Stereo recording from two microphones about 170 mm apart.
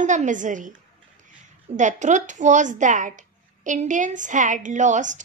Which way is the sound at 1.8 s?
45° right (ahead or behind).